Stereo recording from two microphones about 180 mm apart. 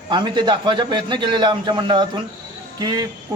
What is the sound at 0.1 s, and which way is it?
A man's voice, 25° right (ahead or behind).